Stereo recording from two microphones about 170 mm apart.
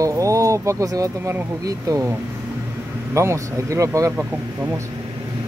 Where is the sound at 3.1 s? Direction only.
15° right (ahead or behind).